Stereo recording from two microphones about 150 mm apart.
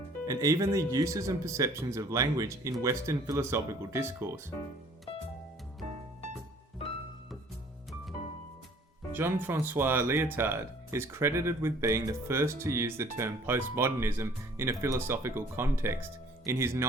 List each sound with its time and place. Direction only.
0.3 s speech: 25° right (ahead or behind)
9.1 s speech: 15° right (ahead or behind)